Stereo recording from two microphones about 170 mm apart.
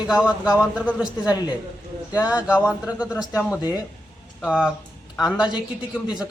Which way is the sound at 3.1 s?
20° left (ahead or behind).